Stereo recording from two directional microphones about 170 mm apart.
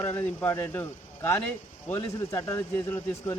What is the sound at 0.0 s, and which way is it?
A man's voice, 15° left (ahead or behind).